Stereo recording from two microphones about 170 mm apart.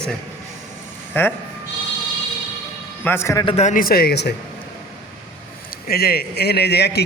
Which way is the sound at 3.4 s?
40° left (ahead or behind).